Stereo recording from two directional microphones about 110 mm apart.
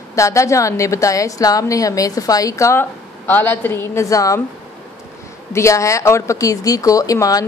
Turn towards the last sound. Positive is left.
turn(degrees=30)  # may be behind; listen again after turning